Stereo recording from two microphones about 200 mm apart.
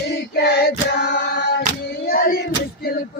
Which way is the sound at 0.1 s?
55° left (ahead or behind).